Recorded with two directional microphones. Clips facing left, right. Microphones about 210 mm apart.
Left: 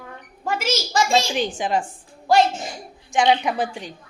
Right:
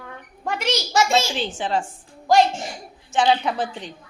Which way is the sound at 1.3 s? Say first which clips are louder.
Left 2 dB; 15° left (ahead or behind).